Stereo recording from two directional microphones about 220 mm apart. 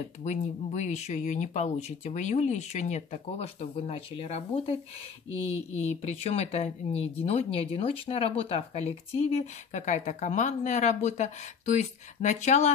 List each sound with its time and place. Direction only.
0.2 s speech: 30° left (ahead or behind)